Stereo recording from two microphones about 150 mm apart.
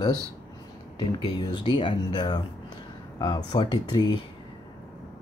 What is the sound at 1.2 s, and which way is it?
Speech, 25° left (ahead or behind).